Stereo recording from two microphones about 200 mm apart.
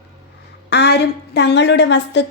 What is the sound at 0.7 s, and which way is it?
A woman's voice, 55° left (ahead or behind).